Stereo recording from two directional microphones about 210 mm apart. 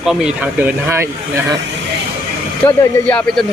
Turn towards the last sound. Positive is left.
turn(degrees=5)  # may be behind; listen again after turning